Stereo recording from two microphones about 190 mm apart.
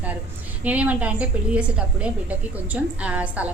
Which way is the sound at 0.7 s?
5° right (ahead or behind).